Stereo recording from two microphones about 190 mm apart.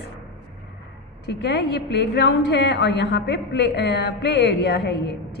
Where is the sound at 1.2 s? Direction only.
65° left (ahead or behind).